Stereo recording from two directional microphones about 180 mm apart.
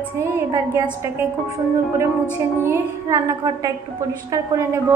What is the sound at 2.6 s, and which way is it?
A woman's voice, 15° right (ahead or behind).